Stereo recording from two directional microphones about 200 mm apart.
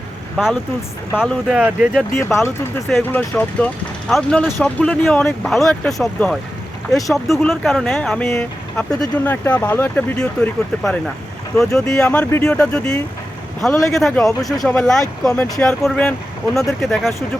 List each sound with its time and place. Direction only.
1.1 s speech: 5° right (ahead or behind)
2.1 s speech: 10° left (ahead or behind)